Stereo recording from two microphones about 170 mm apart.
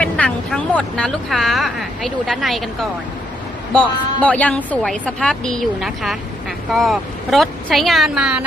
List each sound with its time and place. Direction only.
0.0 s a woman's voice: 5° left (ahead or behind)
3.7 s a woman's voice: 5° left (ahead or behind)